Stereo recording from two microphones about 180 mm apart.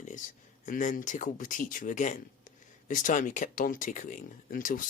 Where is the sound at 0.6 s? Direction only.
45° left (ahead or behind).